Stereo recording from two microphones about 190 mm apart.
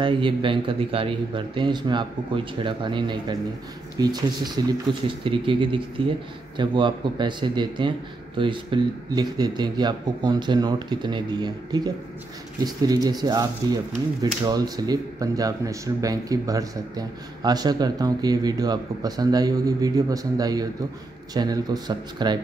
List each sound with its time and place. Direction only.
0.0 s speech: 25° right (ahead or behind)